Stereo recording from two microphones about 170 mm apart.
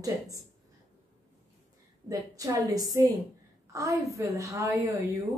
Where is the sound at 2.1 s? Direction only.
20° right (ahead or behind).